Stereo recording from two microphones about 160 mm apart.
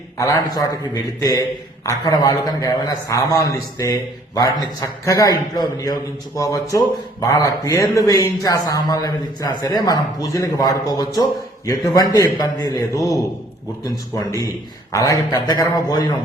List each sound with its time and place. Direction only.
0.2 s a man's voice: 20° left (ahead or behind)